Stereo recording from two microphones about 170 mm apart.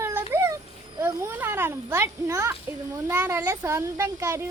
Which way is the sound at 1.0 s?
15° right (ahead or behind).